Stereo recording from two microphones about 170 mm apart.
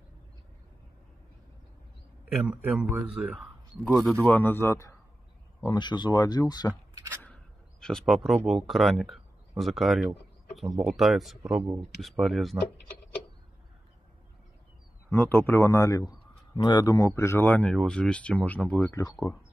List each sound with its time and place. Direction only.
2.2 s a man's voice: 5° right (ahead or behind); by 6.7 s 25° left (ahead or behind)
7.1 s a sound: 10° left (ahead or behind)
8.1 s speech: centre (ahead or behind)
15.0 s a man's voice: 10° left (ahead or behind)
18.9 s speech: 20° left (ahead or behind)